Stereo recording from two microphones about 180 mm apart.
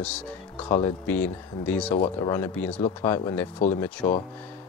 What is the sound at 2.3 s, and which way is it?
A man's voice, 10° left (ahead or behind).